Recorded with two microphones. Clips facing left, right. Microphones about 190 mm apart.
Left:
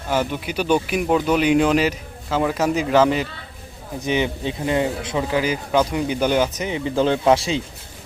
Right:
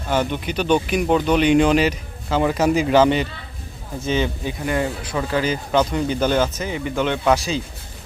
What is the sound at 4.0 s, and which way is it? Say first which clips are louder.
Speech: even; 15° left (ahead or behind).